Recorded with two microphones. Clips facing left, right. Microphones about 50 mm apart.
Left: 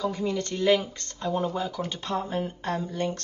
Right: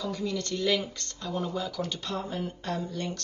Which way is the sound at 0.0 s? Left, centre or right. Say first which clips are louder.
Left 4 dB; left.